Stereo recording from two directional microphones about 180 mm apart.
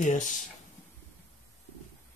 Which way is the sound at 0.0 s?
45° left (ahead or behind).